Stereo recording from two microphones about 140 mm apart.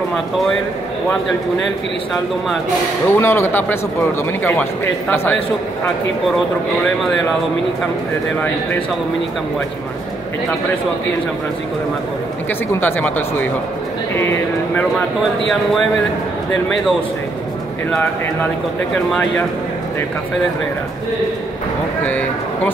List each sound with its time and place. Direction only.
3.1 s a man's voice: 15° left (ahead or behind)
6.3 s speech: centre (ahead or behind)
12.8 s a man's voice: 15° left (ahead or behind)
22.0 s a man's voice: 10° left (ahead or behind)